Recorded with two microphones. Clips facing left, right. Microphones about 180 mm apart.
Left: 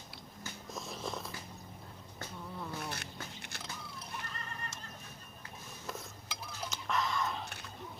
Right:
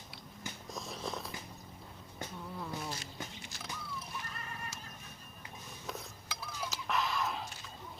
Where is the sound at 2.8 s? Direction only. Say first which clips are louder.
Even; 65° left (ahead or behind).